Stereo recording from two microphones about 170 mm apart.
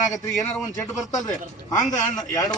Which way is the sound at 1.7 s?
20° left (ahead or behind).